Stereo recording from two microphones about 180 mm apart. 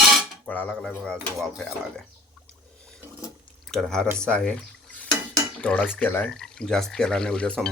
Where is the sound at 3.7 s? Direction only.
Centre (ahead or behind).